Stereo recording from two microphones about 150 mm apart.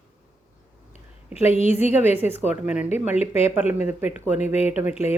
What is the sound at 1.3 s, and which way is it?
Speech, 45° left (ahead or behind).